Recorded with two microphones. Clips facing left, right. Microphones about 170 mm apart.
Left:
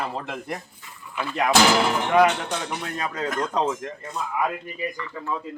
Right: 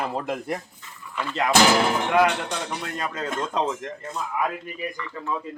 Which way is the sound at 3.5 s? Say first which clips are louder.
Even; 15° left (ahead or behind).